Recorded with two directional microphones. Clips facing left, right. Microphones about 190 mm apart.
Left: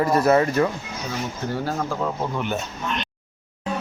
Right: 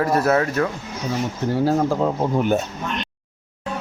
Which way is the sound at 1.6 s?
35° right (ahead or behind).